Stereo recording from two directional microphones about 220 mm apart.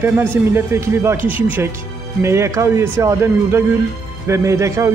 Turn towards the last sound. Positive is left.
turn(degrees=-15)  # may be behind; listen again after turning